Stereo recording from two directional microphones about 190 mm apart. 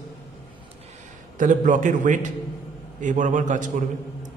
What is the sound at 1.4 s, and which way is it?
A man's voice, 45° right (ahead or behind).